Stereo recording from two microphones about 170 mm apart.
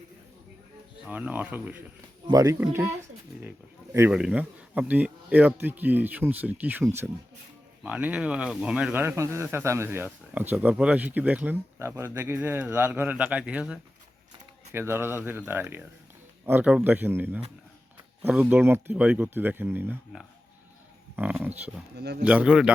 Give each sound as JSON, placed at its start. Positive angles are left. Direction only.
{"t": 1.0, "sound": "speech", "side_deg": -10}
{"t": 2.2, "sound": "speech", "side_deg": -20}
{"t": 3.9, "sound": "speech", "side_deg": -10}
{"t": 7.9, "sound": "speech", "side_deg": -10}
{"t": 21.9, "sound": "speech", "side_deg": -70}
{"t": 22.2, "sound": "speech", "side_deg": -10}